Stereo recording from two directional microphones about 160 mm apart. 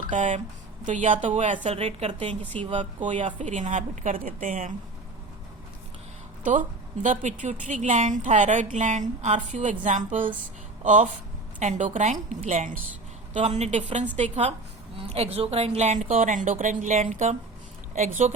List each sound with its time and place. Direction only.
0.1 s a woman's voice: 50° right (ahead or behind)
1.6 s a woman's voice: 40° right (ahead or behind)
2.3 s a woman's voice: 10° left (ahead or behind)
3.2 s a woman's voice: 50° right (ahead or behind)
6.4 s a woman's voice: 55° right (ahead or behind)